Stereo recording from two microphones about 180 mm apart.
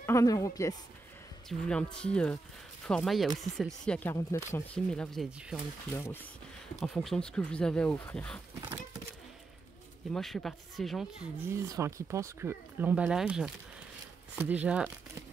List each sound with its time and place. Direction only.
0.0 s speech: 15° left (ahead or behind)
1.5 s speech: 5° left (ahead or behind)
4.1 s speech: 15° left (ahead or behind); by 5.6 s centre (ahead or behind)
6.8 s speech: centre (ahead or behind)
10.1 s speech: centre (ahead or behind)
11.4 s speech: 15° right (ahead or behind)